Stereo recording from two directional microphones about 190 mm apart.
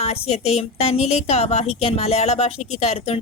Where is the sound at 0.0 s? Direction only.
30° left (ahead or behind).